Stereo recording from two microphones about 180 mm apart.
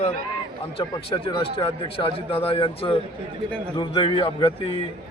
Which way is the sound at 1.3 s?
30° left (ahead or behind).